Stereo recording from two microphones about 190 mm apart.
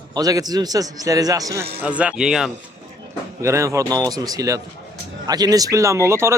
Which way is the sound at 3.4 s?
15° right (ahead or behind).